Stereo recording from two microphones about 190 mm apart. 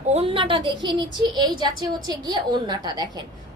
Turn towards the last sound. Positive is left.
turn(degrees=-20)  # may be behind; listen again after turning